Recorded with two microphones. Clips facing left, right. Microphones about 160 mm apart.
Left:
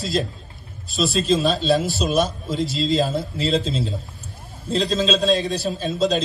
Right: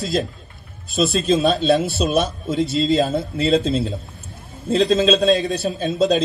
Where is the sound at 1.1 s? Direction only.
50° right (ahead or behind).